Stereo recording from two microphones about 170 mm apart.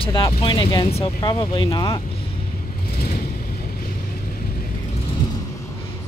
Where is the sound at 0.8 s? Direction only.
35° left (ahead or behind).